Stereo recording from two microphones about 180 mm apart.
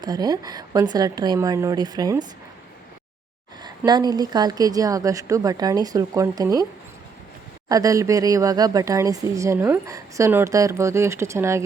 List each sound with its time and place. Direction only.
0.0 s a woman's voice: 20° right (ahead or behind)
3.6 s a woman's voice: 25° right (ahead or behind)
7.7 s speech: 20° right (ahead or behind)